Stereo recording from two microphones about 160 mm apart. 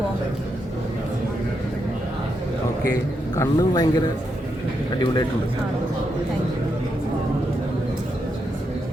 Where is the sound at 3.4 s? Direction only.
25° left (ahead or behind).